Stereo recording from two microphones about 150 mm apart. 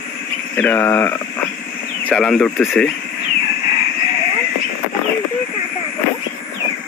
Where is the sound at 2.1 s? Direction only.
5° left (ahead or behind).